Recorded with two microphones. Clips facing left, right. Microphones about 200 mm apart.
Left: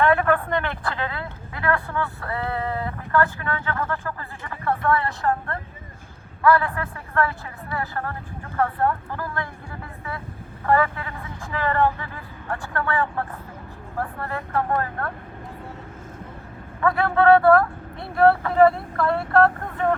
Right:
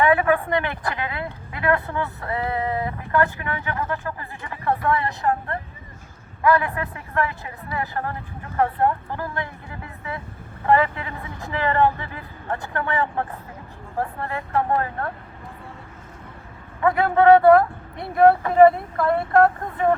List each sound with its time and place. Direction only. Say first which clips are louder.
0.0 s speech: right 1 dB; 10° right (ahead or behind)
10.7 s speech: right 2 dB; 20° right (ahead or behind)
16.8 s speech: right 2 dB; 20° right (ahead or behind)